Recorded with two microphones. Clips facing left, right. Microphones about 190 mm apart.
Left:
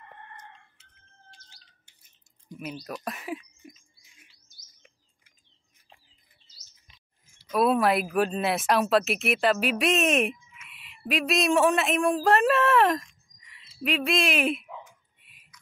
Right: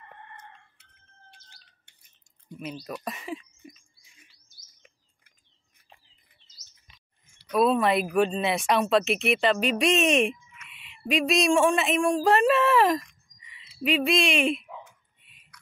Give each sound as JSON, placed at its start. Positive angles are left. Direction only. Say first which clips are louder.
{"t": 1.3, "sound": "squawk", "louder": "even", "side_deg": -60}
{"t": 2.6, "sound": "speech", "louder": "even", "side_deg": 5}
{"t": 7.2, "sound": "a sound", "louder": "right 2 dB", "side_deg": -65}
{"t": 7.5, "sound": "speech", "louder": "right 1 dB", "side_deg": 5}
{"t": 13.4, "sound": "bird", "louder": "right 2 dB", "side_deg": 0}
{"t": 15.2, "sound": "whispering", "louder": "even", "side_deg": 5}